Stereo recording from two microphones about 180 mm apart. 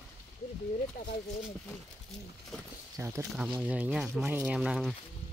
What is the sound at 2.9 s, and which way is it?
Speech, 15° right (ahead or behind).